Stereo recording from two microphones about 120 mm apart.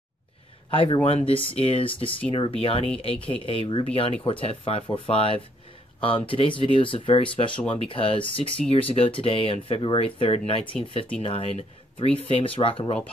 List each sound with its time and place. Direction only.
0.7 s speech: 45° left (ahead or behind)